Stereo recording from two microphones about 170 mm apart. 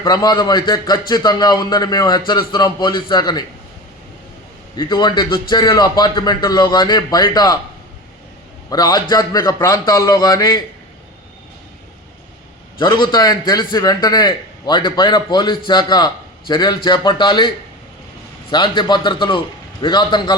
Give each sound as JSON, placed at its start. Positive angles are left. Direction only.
{"t": 0.0, "sound": "a man's voice", "side_deg": 25}
{"t": 4.8, "sound": "a man's voice", "side_deg": 25}
{"t": 8.7, "sound": "a man's voice", "side_deg": 25}
{"t": 12.8, "sound": "a man's voice", "side_deg": 25}
{"t": 18.5, "sound": "a man's voice", "side_deg": 25}